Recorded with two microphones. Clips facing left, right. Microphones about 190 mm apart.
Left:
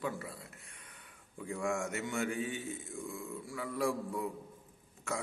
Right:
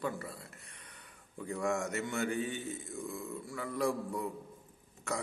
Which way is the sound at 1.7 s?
Centre (ahead or behind).